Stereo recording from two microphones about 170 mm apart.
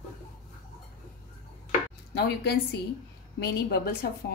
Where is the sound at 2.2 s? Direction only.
75° left (ahead or behind).